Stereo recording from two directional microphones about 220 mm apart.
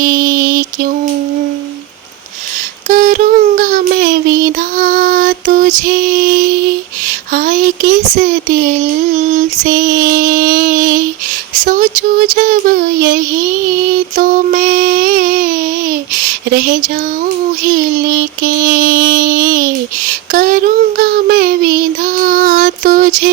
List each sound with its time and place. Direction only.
0.0 s mantra: 40° right (ahead or behind)
2.9 s child singing: 35° right (ahead or behind)
4.8 s music: 40° right (ahead or behind)
7.3 s speech: 40° right (ahead or behind)
9.3 s mantra: 40° right (ahead or behind)
14.2 s mantra: 40° right (ahead or behind)
16.5 s mantra: 40° right (ahead or behind)
20.3 s child singing: 40° right (ahead or behind)